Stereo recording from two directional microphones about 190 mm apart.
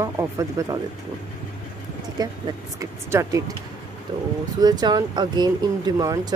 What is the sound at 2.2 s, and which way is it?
Speech, 20° right (ahead or behind).